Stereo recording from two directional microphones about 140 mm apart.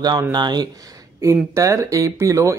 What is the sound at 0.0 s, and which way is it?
Speech, 30° right (ahead or behind).